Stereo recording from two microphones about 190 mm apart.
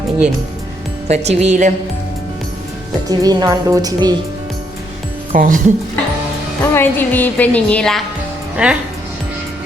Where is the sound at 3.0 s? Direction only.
20° right (ahead or behind).